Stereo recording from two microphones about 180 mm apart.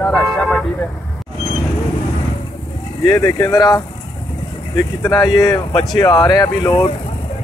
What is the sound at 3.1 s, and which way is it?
Speech, 15° left (ahead or behind).